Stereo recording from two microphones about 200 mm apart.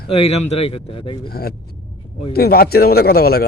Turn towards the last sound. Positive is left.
turn(degrees=50)  # may be behind; listen again after turning